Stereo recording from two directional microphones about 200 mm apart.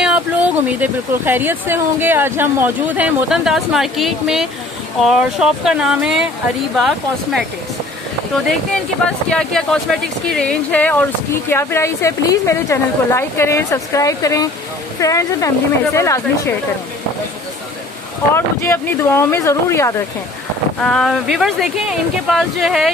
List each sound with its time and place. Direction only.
0.0 s a sound: 5° right (ahead or behind)
0.7 s speech: 10° right (ahead or behind)
9.3 s speech: centre (ahead or behind)
18.3 s speech: 10° left (ahead or behind)
20.8 s speech: centre (ahead or behind)